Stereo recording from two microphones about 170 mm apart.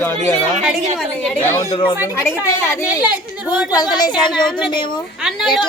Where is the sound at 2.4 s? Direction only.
15° left (ahead or behind).